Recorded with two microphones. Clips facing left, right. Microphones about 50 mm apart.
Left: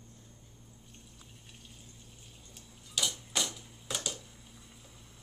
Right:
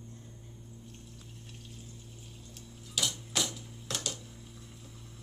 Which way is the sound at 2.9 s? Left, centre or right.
Centre.